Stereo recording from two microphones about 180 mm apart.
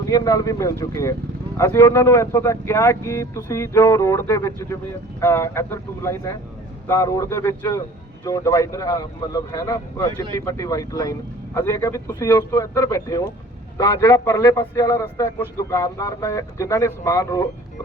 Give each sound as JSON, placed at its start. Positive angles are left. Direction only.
{"t": 0.0, "sound": "a man's voice", "side_deg": 20}